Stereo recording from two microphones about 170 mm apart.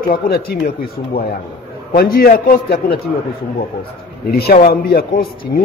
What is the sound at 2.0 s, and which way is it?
Speech, 60° left (ahead or behind).